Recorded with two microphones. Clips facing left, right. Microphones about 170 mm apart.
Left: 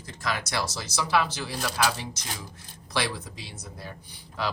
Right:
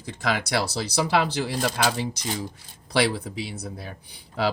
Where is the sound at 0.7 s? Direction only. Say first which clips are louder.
Right 1 dB; 65° right (ahead or behind).